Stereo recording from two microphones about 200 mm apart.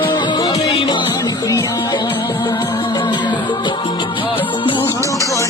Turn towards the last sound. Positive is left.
turn(degrees=15)  # may be behind; listen again after turning